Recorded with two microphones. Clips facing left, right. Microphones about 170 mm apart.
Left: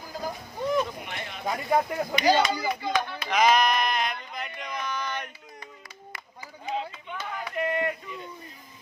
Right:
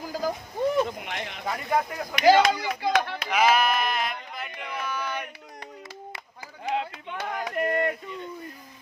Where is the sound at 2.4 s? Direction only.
90° right.